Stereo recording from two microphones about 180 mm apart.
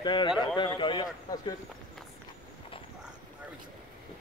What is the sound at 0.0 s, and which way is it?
Speech, 25° left (ahead or behind).